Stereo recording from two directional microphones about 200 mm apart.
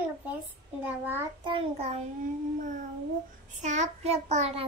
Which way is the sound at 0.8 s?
10° right (ahead or behind).